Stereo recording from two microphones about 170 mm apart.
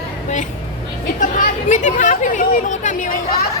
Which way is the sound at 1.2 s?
50° left (ahead or behind).